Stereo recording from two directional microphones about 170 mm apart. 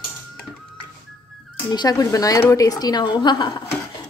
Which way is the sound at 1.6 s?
25° left (ahead or behind).